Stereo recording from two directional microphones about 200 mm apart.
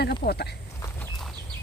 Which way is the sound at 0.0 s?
55° left (ahead or behind).